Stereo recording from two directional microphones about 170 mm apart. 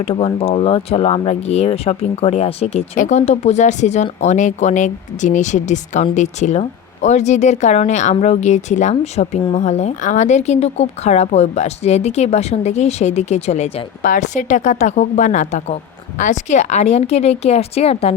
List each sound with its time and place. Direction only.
0.0 s speech: 35° left (ahead or behind)